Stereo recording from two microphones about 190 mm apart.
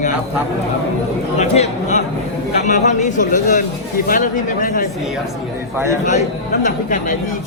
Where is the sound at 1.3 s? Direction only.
35° left (ahead or behind).